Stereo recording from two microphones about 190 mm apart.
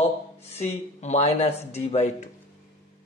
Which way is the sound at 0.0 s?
35° left (ahead or behind).